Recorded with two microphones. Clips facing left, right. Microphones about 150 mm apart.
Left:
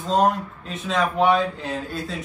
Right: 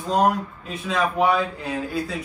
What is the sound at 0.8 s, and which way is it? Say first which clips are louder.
Speech: left 1 dB; 5° right (ahead or behind).